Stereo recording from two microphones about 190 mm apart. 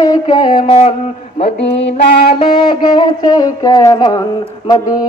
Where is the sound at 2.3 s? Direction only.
25° left (ahead or behind).